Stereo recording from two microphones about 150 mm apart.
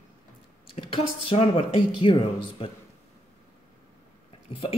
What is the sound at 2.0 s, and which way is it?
Speech, 35° left (ahead or behind).